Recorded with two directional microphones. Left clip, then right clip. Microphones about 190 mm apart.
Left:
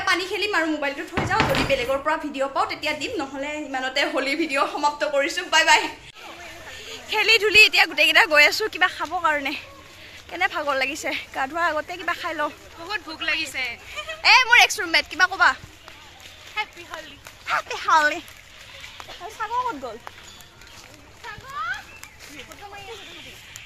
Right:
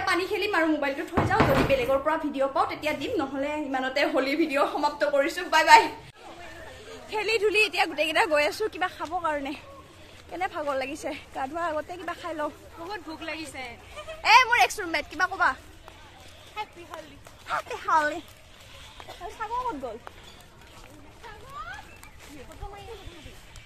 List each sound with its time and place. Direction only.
0.0 s a woman's voice: centre (ahead or behind)
6.8 s speech: centre (ahead or behind)
13.2 s speech: 15° right (ahead or behind)
14.2 s a woman's voice: 10° left (ahead or behind)
17.5 s speech: 15° left (ahead or behind)
19.7 s speech: 15° left (ahead or behind)